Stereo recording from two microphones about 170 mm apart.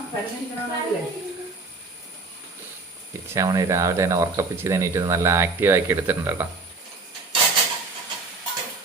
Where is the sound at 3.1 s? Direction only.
15° right (ahead or behind).